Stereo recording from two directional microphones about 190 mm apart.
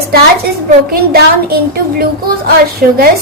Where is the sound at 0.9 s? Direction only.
50° right (ahead or behind).